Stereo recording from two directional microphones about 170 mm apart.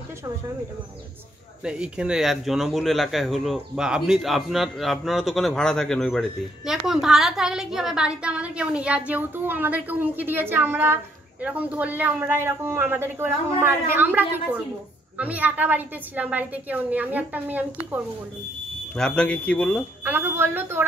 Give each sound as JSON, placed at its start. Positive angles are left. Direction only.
{"t": 1.6, "sound": "a man's voice", "side_deg": -5}
{"t": 18.9, "sound": "speech", "side_deg": 5}
{"t": 20.1, "sound": "a man's voice", "side_deg": -10}